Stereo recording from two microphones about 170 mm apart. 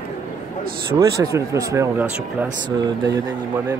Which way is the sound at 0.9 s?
20° right (ahead or behind).